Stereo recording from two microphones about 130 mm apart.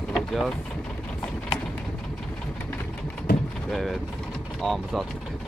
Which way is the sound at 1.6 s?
10° left (ahead or behind).